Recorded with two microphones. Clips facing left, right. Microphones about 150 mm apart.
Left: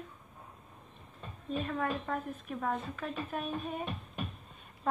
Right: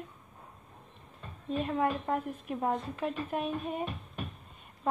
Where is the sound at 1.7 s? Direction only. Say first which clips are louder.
Right 5 dB; 20° right (ahead or behind).